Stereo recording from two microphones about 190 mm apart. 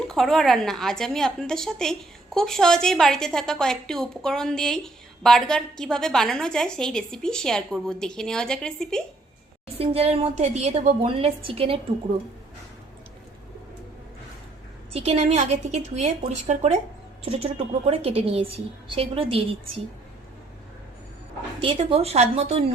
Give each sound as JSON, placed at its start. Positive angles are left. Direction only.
{"t": 0.0, "sound": "a woman's voice", "side_deg": 0}
{"t": 9.7, "sound": "a woman's voice", "side_deg": -30}
{"t": 14.9, "sound": "a woman's voice", "side_deg": -35}
{"t": 21.6, "sound": "a woman's voice", "side_deg": -30}